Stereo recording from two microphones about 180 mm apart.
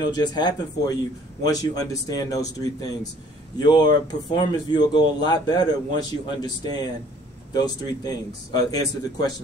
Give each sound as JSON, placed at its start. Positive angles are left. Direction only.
{"t": 0.1, "sound": "speech", "side_deg": 25}